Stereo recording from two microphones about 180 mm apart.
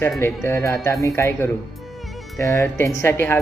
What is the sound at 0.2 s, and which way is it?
Speech, 15° left (ahead or behind).